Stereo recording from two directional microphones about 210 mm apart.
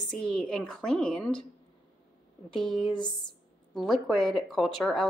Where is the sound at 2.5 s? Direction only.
Centre (ahead or behind).